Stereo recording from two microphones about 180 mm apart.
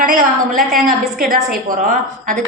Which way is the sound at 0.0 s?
50° right (ahead or behind).